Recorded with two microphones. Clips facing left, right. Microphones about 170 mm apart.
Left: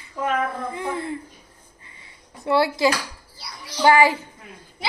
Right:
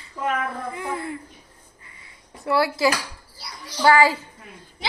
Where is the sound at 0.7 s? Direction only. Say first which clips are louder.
Left 2 dB; 25° left (ahead or behind).